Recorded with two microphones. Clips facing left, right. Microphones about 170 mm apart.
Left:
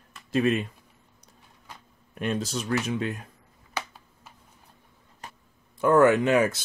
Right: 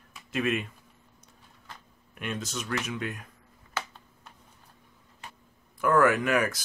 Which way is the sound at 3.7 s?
5° left (ahead or behind).